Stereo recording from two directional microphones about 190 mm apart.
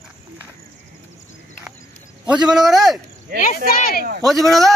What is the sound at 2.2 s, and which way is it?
Speech, 5° right (ahead or behind).